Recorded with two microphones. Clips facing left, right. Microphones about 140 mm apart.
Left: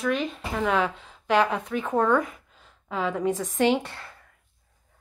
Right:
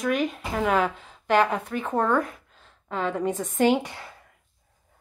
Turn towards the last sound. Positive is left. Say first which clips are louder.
# right 1 dB
turn(degrees=-5)  # may be behind; listen again after turning